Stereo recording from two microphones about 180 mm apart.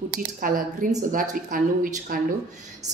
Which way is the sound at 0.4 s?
50° right (ahead or behind).